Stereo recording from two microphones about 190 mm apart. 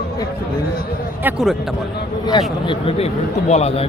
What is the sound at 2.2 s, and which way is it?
A man's voice, 25° left (ahead or behind).